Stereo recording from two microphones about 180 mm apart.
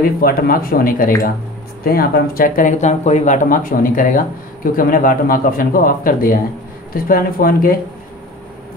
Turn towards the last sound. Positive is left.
turn(degrees=55)  # may be behind; listen again after turning